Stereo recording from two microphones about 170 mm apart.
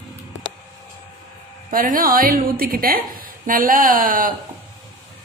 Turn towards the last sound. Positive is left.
turn(degrees=-55)  # may be behind; listen again after turning